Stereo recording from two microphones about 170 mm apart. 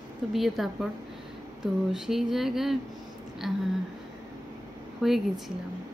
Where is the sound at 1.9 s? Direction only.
Centre (ahead or behind).